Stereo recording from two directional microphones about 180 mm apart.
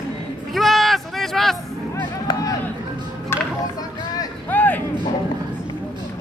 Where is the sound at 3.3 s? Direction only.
15° left (ahead or behind).